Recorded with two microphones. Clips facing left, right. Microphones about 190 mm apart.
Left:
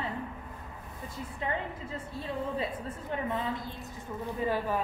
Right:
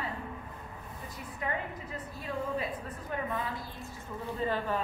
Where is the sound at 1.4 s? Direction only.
25° left (ahead or behind).